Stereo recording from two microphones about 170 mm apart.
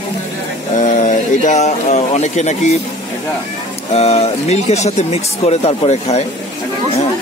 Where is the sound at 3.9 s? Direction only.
35° left (ahead or behind).